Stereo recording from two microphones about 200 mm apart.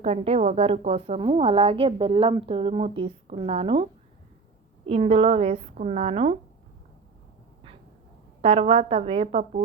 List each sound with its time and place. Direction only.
0.0 s a woman's voice: 35° right (ahead or behind)
4.9 s a woman's voice: 30° right (ahead or behind)
8.4 s a woman's voice: 30° right (ahead or behind)